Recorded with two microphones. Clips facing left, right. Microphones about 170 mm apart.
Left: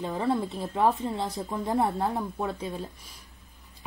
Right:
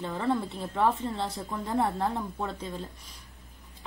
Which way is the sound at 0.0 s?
15° left (ahead or behind).